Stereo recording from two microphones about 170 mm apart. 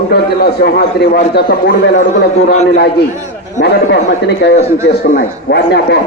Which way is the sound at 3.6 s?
80° left.